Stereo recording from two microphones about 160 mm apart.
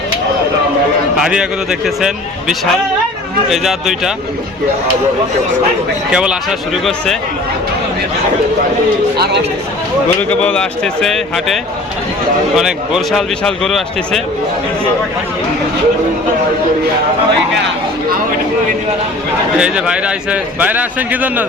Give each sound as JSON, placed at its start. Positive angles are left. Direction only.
{"t": 1.1, "sound": "speech", "side_deg": -5}
{"t": 6.1, "sound": "speech", "side_deg": -5}
{"t": 9.1, "sound": "speech", "side_deg": -90}
{"t": 10.2, "sound": "speech", "side_deg": 10}
{"t": 19.5, "sound": "a man's voice", "side_deg": -5}